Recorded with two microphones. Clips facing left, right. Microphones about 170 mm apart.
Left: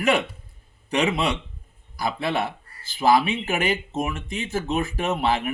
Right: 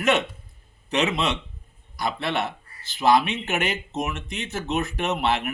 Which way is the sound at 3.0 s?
10° left (ahead or behind).